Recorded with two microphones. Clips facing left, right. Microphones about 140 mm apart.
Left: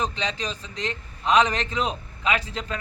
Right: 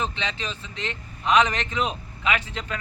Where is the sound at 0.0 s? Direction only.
35° left (ahead or behind).